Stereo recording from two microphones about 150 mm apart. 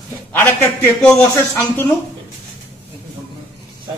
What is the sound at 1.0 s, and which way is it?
Speech, 15° left (ahead or behind).